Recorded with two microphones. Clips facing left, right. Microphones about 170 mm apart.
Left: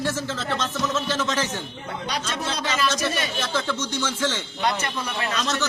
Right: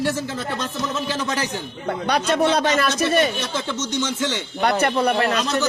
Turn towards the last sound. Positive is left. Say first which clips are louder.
# right 9 dB
turn(degrees=-55)  # may be behind; listen again after turning